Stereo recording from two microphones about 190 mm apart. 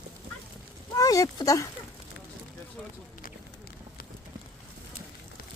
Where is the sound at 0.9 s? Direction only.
20° left (ahead or behind).